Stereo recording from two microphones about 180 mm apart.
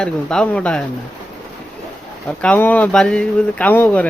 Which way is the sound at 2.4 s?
10° left (ahead or behind).